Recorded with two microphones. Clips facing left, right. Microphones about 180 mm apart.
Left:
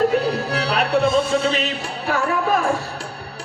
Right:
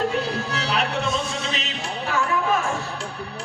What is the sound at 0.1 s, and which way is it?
Music, 40° left (ahead or behind).